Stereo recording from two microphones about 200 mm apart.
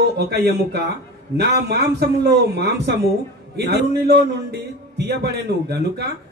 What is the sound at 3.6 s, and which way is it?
A man's voice, 55° right (ahead or behind).